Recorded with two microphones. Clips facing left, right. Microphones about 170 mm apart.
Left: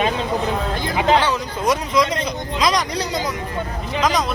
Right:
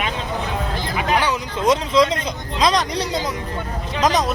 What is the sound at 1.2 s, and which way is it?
Speech, 20° right (ahead or behind).